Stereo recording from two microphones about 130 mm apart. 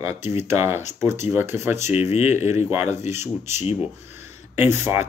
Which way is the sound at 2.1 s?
55° left (ahead or behind).